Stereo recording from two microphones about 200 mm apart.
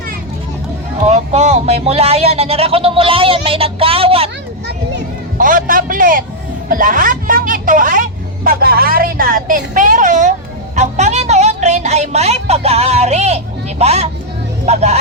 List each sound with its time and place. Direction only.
1.0 s speech: 35° right (ahead or behind)
5.4 s a woman's voice: 45° right (ahead or behind)
10.8 s a sound: 35° right (ahead or behind)
14.7 s music: 35° right (ahead or behind)